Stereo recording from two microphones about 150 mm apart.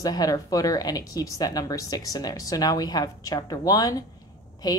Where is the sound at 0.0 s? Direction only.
25° left (ahead or behind).